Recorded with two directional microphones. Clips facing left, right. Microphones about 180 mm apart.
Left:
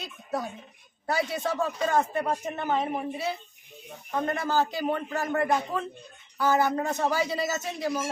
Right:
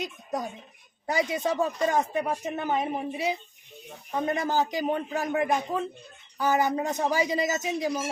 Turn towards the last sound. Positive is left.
turn(degrees=-15)  # may be behind; listen again after turning